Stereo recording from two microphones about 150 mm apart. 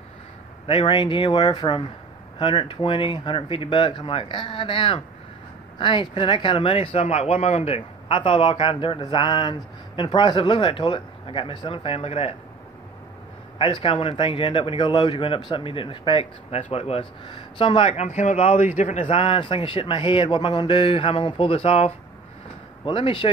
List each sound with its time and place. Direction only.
0.7 s speech: 35° left (ahead or behind)
13.6 s speech: 35° left (ahead or behind)